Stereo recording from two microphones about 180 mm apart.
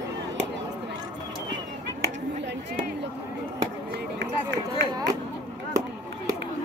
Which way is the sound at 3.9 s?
75° right (ahead or behind).